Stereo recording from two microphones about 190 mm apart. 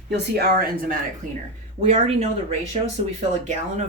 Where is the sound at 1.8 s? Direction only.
35° right (ahead or behind).